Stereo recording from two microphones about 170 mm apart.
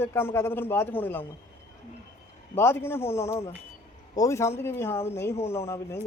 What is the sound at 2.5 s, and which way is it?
Speech, 15° left (ahead or behind).